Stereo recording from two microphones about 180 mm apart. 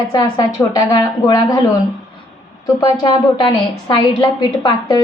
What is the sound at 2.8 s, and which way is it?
A woman's voice, 25° left (ahead or behind).